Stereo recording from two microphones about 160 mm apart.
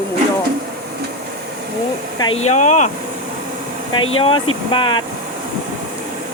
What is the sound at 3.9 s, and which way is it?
Speech, 35° left (ahead or behind).